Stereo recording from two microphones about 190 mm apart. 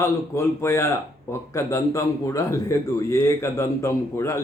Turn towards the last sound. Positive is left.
turn(degrees=15)  # may be behind; listen again after turning